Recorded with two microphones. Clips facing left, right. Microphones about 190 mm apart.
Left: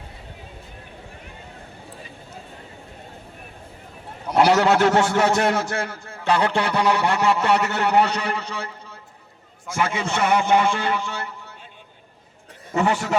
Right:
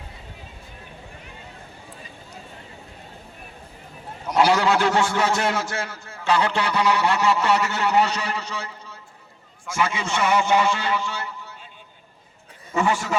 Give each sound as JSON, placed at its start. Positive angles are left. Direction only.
{"t": 4.4, "sound": "a man's voice", "side_deg": 55}
{"t": 12.7, "sound": "a man's voice", "side_deg": 60}